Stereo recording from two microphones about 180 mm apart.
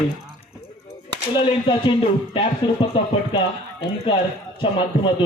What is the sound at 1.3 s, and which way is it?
Speech, 30° left (ahead or behind).